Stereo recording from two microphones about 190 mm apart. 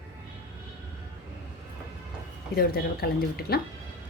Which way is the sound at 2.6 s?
50° left (ahead or behind).